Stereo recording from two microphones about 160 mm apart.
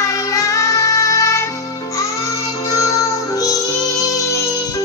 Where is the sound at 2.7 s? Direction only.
20° left (ahead or behind).